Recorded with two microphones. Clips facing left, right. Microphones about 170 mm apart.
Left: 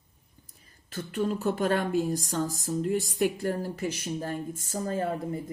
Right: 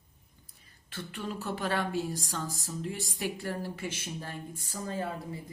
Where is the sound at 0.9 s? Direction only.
45° left (ahead or behind).